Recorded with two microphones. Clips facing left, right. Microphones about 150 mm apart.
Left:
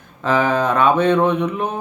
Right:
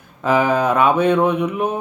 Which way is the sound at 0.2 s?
10° right (ahead or behind).